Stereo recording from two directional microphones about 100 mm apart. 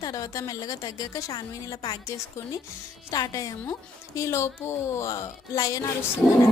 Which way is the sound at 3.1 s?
40° left (ahead or behind).